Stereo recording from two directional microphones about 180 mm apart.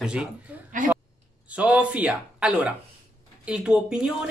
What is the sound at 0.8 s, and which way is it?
Speech, 45° right (ahead or behind).